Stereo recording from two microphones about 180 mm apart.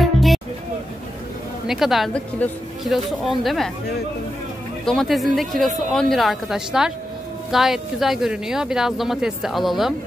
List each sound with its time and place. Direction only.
0.0 s music: centre (ahead or behind)
1.7 s speech: centre (ahead or behind)
4.8 s speech: centre (ahead or behind)